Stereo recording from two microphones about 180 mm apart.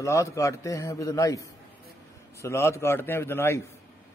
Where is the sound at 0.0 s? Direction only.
15° left (ahead or behind).